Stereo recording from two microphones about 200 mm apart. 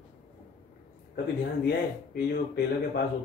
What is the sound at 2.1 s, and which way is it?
Speech, 55° left (ahead or behind).